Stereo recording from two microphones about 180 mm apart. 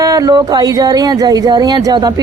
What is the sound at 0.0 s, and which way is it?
Speech, 20° right (ahead or behind).